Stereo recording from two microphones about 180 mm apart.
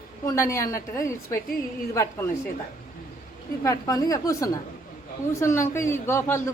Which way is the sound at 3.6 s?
20° left (ahead or behind).